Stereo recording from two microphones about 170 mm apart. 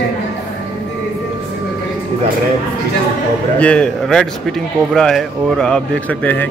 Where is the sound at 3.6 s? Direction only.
5° left (ahead or behind).